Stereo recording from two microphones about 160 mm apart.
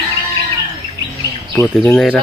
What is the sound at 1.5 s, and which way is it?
Speech, 15° left (ahead or behind).